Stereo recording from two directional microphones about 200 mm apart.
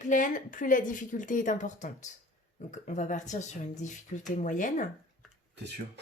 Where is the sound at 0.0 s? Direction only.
40° left (ahead or behind).